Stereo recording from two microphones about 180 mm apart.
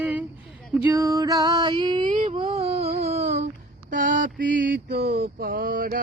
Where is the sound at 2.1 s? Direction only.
40° right (ahead or behind).